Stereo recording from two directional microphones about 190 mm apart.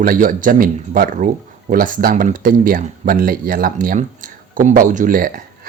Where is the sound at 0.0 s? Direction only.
45° right (ahead or behind).